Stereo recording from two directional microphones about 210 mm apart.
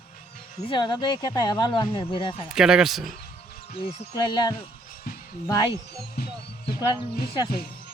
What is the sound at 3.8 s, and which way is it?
Speech, 25° left (ahead or behind).